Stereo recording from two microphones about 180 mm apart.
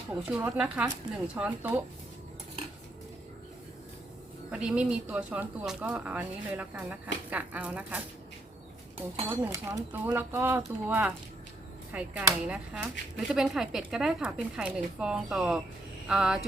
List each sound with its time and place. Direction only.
0.2 s speech: 5° right (ahead or behind)
4.5 s speech: 5° right (ahead or behind)
9.0 s speech: 25° right (ahead or behind)
9.4 s speech: 15° right (ahead or behind)